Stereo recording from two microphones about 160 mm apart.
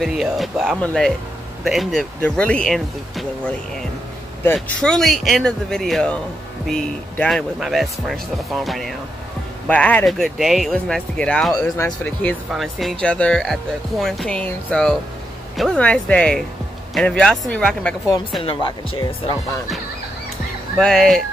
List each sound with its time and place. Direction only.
0.0 s speech: centre (ahead or behind)
4.6 s speech: 5° left (ahead or behind)
18.4 s speech: 30° left (ahead or behind)
20.7 s speech: 5° left (ahead or behind)